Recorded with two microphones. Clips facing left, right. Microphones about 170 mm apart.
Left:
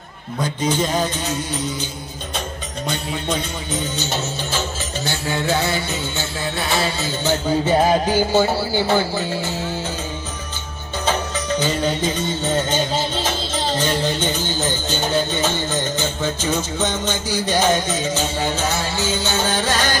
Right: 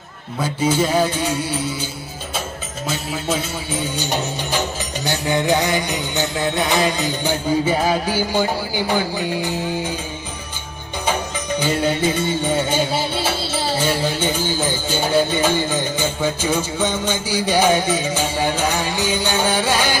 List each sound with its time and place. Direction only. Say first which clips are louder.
0.4 s music: right 2 dB; 10° right (ahead or behind)
11.0 s music: left 1 dB; 10° right (ahead or behind)